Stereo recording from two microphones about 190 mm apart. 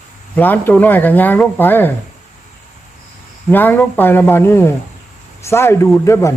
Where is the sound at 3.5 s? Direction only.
10° left (ahead or behind).